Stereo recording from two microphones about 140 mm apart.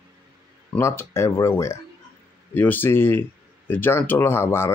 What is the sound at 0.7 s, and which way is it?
Speech, 20° left (ahead or behind).